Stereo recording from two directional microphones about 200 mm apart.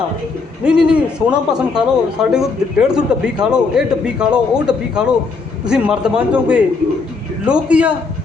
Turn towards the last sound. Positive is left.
turn(degrees=-5)  # may be behind; listen again after turning